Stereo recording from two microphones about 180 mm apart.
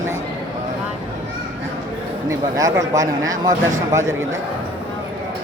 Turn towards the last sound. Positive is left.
turn(degrees=-15)  # may be behind; listen again after turning